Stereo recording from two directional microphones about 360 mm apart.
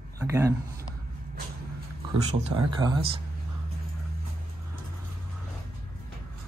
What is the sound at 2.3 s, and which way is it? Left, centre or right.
Speech, centre.